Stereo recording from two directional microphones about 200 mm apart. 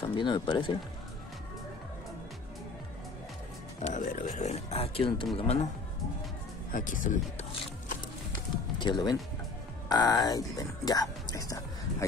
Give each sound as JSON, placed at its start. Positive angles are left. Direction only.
{"t": 0.0, "sound": "speech", "side_deg": 25}
{"t": 3.8, "sound": "speech", "side_deg": 40}
{"t": 6.7, "sound": "speech", "side_deg": 40}
{"t": 8.7, "sound": "speech", "side_deg": 20}